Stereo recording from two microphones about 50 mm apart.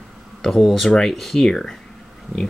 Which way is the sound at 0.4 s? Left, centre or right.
Centre.